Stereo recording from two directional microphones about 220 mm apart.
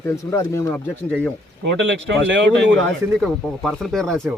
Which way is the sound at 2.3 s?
55° right (ahead or behind).